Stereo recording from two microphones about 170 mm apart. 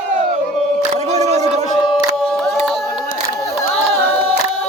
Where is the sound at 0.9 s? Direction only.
40° right (ahead or behind).